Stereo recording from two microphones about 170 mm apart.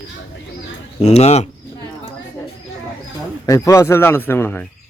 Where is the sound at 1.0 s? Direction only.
40° left (ahead or behind).